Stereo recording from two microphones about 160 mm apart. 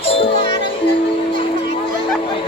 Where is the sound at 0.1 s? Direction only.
35° left (ahead or behind).